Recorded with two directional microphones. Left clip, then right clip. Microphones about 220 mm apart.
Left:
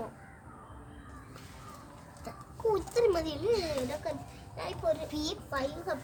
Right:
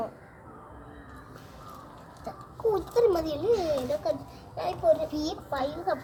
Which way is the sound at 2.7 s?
15° left (ahead or behind).